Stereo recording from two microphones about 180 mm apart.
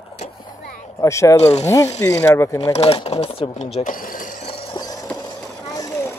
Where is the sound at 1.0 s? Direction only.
15° left (ahead or behind).